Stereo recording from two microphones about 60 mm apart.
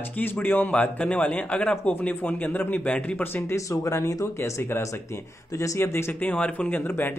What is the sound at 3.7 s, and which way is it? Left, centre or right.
Speech, left.